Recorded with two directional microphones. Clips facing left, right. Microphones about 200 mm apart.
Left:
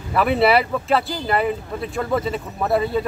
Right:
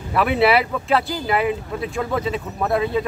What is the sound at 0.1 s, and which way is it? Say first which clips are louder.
Speech: even; centre (ahead or behind).